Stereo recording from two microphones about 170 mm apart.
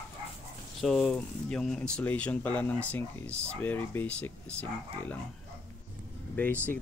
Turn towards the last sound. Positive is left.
turn(degrees=10)  # may be behind; listen again after turning